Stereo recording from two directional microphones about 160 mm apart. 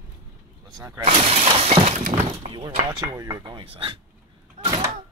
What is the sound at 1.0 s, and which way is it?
Speech, 40° right (ahead or behind).